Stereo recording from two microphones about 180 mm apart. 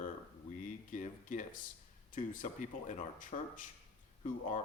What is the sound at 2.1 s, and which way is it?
A man's voice, 45° left (ahead or behind).